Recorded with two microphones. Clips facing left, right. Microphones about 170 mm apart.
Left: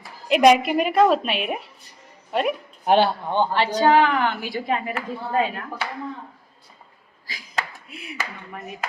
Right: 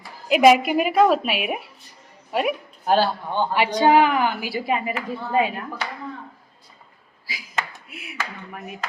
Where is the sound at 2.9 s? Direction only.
20° left (ahead or behind).